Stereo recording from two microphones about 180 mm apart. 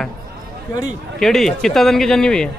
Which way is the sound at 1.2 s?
Centre (ahead or behind).